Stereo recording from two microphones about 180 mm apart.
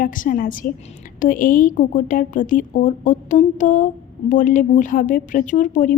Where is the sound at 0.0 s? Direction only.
50° left (ahead or behind).